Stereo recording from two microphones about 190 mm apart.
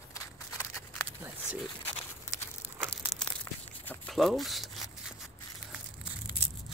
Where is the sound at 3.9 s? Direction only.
Centre (ahead or behind).